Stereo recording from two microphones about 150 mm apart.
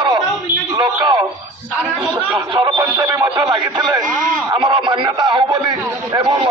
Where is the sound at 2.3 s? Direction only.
25° right (ahead or behind).